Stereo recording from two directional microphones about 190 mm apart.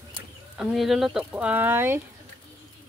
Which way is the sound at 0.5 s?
Centre (ahead or behind).